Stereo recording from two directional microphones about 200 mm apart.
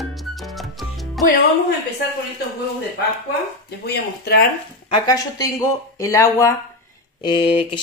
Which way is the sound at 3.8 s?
50° left (ahead or behind).